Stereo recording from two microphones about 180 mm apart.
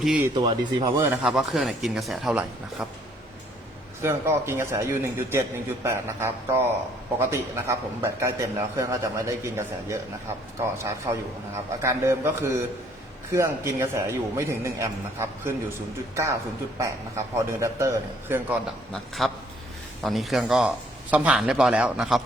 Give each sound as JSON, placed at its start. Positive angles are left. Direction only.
{"t": 0.3, "sound": "speech", "side_deg": -25}
{"t": 1.1, "sound": "speech", "side_deg": -5}
{"t": 4.0, "sound": "a man's voice", "side_deg": -15}
{"t": 19.2, "sound": "speech", "side_deg": 0}